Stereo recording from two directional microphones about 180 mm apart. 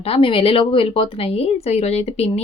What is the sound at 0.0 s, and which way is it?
A woman's voice, 30° left (ahead or behind).